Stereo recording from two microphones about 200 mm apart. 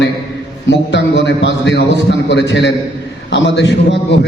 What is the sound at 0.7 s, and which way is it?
A man's voice, 60° left (ahead or behind).